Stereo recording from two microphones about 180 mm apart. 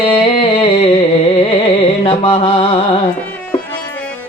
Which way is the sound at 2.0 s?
30° left (ahead or behind).